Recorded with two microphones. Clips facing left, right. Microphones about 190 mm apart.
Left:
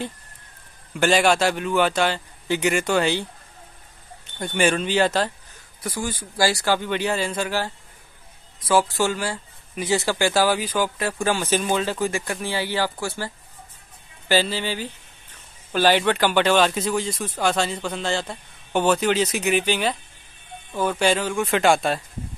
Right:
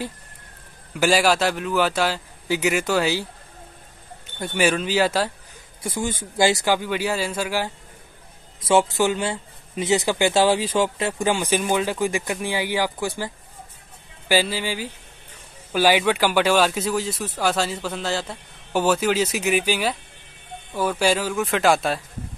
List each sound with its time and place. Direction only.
0.9 s speech: 5° right (ahead or behind)
4.4 s speech: 5° right (ahead or behind)
5.8 s speech: 25° right (ahead or behind)
8.5 s speech: 25° right (ahead or behind); by 22.0 s centre (ahead or behind)